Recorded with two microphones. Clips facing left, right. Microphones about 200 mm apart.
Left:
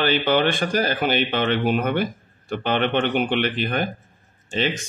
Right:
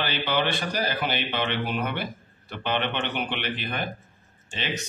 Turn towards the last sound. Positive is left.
turn(degrees=45)  # may be behind; listen again after turning